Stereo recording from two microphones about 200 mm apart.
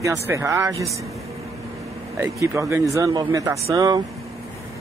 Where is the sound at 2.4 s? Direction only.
15° right (ahead or behind).